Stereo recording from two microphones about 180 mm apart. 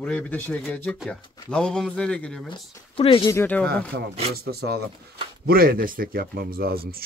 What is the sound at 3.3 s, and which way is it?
Speech, 10° left (ahead or behind).